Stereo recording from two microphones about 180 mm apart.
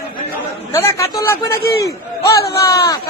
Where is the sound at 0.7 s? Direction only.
15° left (ahead or behind).